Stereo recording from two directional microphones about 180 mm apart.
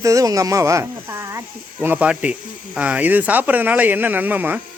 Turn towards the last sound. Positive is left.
turn(degrees=-10)  # may be behind; listen again after turning